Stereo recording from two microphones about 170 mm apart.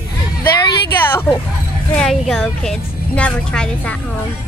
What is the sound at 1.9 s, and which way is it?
A woman's voice, centre (ahead or behind).